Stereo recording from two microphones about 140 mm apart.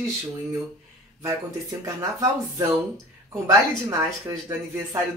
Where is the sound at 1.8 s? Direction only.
20° right (ahead or behind).